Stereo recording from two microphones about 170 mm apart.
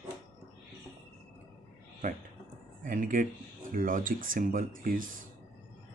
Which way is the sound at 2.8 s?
50° right (ahead or behind).